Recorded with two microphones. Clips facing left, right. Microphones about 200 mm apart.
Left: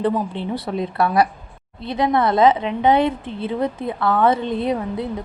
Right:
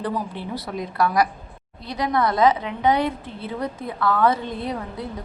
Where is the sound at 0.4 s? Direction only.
20° left (ahead or behind).